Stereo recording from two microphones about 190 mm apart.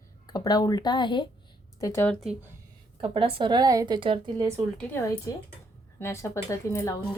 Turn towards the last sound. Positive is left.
turn(degrees=15)  # may be behind; listen again after turning